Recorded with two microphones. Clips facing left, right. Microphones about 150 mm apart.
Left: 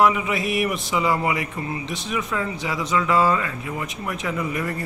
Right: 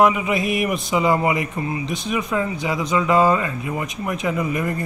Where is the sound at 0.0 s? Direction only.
20° right (ahead or behind).